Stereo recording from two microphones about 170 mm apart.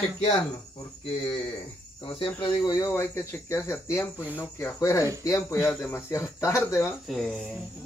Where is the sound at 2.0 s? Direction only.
30° left (ahead or behind).